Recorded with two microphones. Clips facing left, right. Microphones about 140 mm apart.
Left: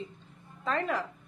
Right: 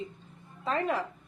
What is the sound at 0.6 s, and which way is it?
Speech, 5° right (ahead or behind).